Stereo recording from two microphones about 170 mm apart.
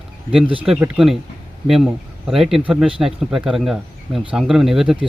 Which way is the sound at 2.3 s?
Centre (ahead or behind).